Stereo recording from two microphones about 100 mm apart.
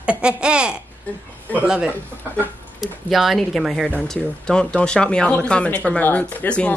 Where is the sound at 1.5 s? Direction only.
15° left (ahead or behind).